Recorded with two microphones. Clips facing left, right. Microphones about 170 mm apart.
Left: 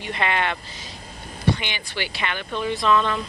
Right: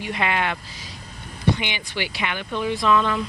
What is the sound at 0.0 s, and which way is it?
Speech, 10° right (ahead or behind).